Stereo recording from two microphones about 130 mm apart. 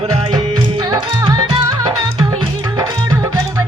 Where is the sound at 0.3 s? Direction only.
35° right (ahead or behind).